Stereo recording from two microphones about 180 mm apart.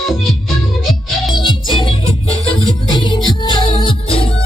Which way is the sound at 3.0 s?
25° left (ahead or behind).